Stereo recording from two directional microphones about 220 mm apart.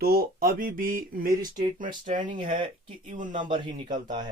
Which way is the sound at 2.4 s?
25° right (ahead or behind).